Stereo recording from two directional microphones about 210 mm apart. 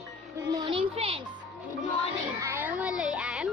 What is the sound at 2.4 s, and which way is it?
Speech, 10° right (ahead or behind).